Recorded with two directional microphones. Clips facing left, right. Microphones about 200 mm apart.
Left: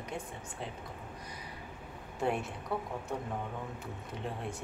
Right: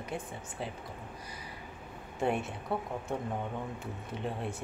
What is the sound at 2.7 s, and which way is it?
Speech, 25° right (ahead or behind).